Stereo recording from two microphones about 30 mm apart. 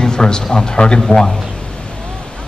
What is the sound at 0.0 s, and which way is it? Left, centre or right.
A man's voice, left.